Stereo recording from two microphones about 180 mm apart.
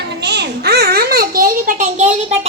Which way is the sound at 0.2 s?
70° right (ahead or behind).